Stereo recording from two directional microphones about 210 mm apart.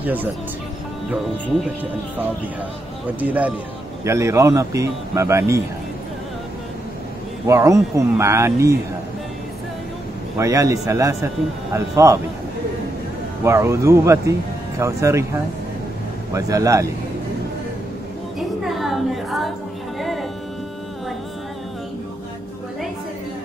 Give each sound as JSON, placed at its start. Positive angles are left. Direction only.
{"t": 0.0, "sound": "speech", "side_deg": -10}
{"t": 3.2, "sound": "speech", "side_deg": -5}
{"t": 7.4, "sound": "speech", "side_deg": -15}
{"t": 10.3, "sound": "speech", "side_deg": -15}
{"t": 13.4, "sound": "speech", "side_deg": -10}
{"t": 18.6, "sound": "a sound", "side_deg": 0}
{"t": 20.0, "sound": "music", "side_deg": 0}